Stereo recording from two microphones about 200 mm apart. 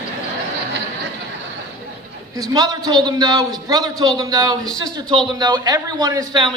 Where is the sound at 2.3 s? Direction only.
20° right (ahead or behind).